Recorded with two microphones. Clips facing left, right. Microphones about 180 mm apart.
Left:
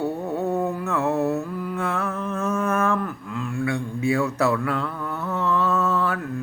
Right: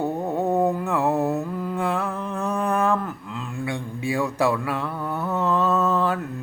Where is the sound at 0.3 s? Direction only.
15° right (ahead or behind).